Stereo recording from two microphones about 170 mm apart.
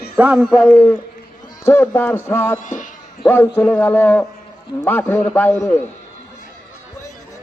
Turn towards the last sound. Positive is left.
turn(degrees=10)  # may be behind; listen again after turning